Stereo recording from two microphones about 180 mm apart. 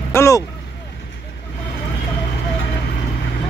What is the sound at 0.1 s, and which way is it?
Vehicle, 15° left (ahead or behind).